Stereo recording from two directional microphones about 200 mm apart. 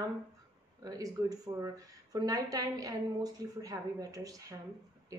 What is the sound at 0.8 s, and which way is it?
Speech, 15° right (ahead or behind).